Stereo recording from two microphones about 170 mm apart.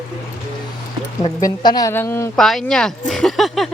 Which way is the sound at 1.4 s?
20° left (ahead or behind).